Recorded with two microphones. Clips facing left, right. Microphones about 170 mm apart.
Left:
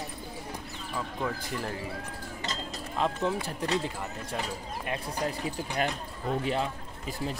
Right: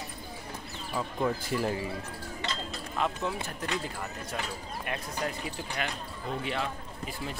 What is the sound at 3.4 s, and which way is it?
Speech, 30° left (ahead or behind).